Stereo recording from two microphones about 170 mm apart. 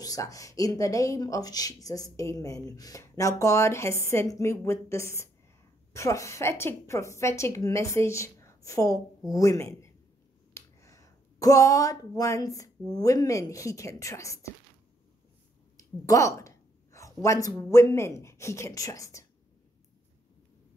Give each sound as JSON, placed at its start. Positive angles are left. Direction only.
{"t": 0.0, "sound": "a woman's voice", "side_deg": 20}
{"t": 15.8, "sound": "a woman's voice", "side_deg": 20}